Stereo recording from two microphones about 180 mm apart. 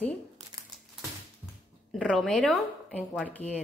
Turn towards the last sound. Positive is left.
turn(degrees=10)  # may be behind; listen again after turning